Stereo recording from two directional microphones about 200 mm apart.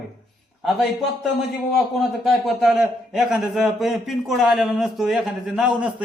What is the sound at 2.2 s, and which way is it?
A man's voice, centre (ahead or behind).